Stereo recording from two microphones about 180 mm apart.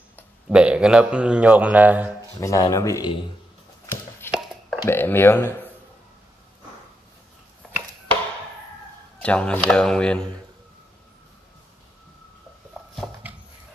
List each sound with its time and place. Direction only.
0.5 s a man's voice: 5° right (ahead or behind)
2.4 s speech: 15° left (ahead or behind)
3.8 s chopping: 15° left (ahead or behind)
4.6 s speech: 10° left (ahead or behind)
9.2 s speech: 5° left (ahead or behind)
12.9 s dog: centre (ahead or behind)